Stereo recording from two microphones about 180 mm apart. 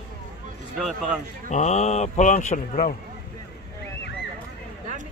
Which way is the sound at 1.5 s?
40° left (ahead or behind).